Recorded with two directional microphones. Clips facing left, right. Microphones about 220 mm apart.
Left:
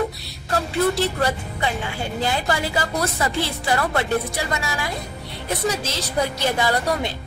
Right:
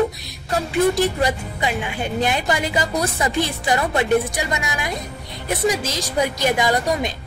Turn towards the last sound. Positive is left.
turn(degrees=-15)  # may be behind; listen again after turning